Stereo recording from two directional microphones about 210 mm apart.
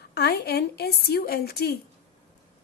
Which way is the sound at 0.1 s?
50° left (ahead or behind).